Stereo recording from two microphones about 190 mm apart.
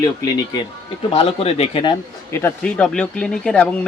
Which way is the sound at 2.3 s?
10° left (ahead or behind).